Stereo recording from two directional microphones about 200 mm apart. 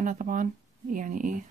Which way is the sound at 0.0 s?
40° right (ahead or behind).